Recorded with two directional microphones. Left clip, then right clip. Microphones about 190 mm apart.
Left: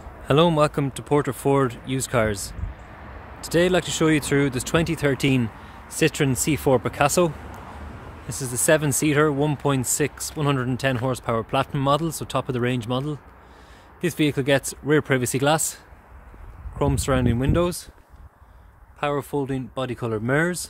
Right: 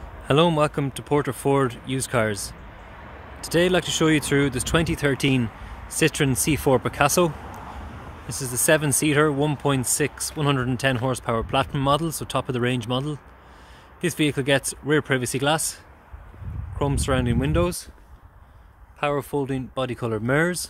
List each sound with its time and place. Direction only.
0.3 s speech: 5° left (ahead or behind)
7.4 s a sound: 50° right (ahead or behind)
8.3 s speech: 5° left (ahead or behind)
18.9 s speech: centre (ahead or behind)